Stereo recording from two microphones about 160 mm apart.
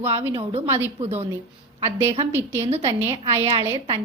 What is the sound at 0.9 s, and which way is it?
Speech, 40° right (ahead or behind).